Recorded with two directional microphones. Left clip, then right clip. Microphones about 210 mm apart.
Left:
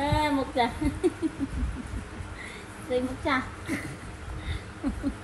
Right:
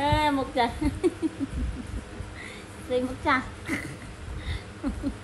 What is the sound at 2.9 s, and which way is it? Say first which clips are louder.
Speech: right 2 dB; centre (ahead or behind).